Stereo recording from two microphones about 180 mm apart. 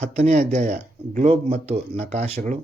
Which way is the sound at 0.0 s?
40° right (ahead or behind).